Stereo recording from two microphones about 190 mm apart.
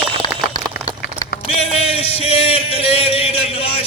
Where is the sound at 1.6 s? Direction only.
35° left (ahead or behind).